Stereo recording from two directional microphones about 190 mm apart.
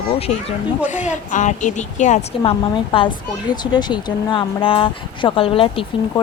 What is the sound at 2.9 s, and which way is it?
Speech, 30° left (ahead or behind).